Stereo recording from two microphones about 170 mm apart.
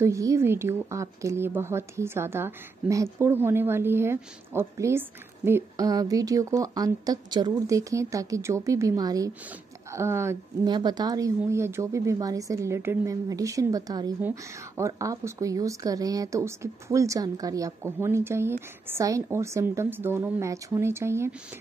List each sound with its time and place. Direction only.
0.0 s a woman's voice: 20° right (ahead or behind)